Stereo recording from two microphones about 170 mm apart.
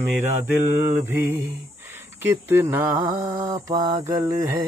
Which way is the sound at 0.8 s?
10° right (ahead or behind).